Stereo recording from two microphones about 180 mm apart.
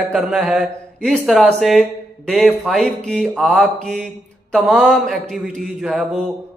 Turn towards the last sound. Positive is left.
turn(degrees=0)  # may be behind; listen again after turning